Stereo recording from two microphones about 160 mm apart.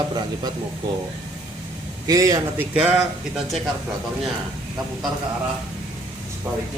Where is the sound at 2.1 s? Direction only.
20° right (ahead or behind).